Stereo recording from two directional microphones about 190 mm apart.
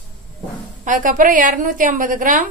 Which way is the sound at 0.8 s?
45° right (ahead or behind).